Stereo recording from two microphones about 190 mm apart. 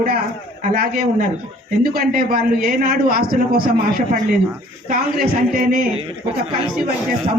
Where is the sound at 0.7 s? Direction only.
50° right (ahead or behind).